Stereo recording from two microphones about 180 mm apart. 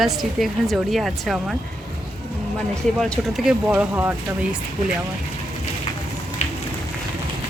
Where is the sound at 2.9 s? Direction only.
5° left (ahead or behind).